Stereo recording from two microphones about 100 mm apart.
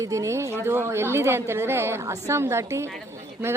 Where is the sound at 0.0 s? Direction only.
30° right (ahead or behind).